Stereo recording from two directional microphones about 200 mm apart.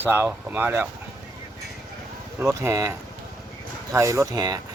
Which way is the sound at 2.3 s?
15° right (ahead or behind).